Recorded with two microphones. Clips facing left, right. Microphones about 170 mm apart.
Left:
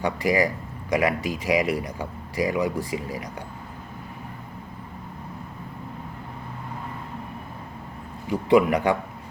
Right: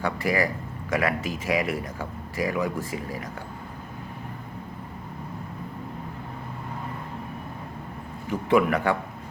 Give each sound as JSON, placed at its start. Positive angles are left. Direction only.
{"t": 0.0, "sound": "speech", "side_deg": 15}
{"t": 8.3, "sound": "speech", "side_deg": 15}